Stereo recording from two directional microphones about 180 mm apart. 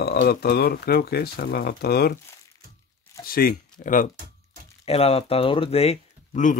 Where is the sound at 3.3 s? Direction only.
55° left (ahead or behind).